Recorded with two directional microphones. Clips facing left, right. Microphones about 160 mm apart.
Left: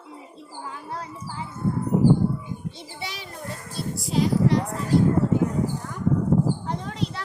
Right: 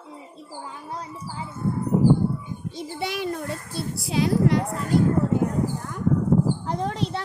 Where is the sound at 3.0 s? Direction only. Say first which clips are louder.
Right 10 dB; 55° right (ahead or behind).